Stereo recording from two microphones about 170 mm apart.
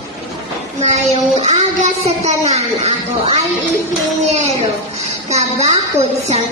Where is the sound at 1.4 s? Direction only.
40° right (ahead or behind).